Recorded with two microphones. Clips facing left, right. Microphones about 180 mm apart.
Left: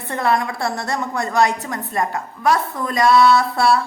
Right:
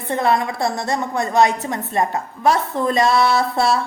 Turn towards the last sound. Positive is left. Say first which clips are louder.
# left 2 dB
turn(degrees=-25)  # may be behind; listen again after turning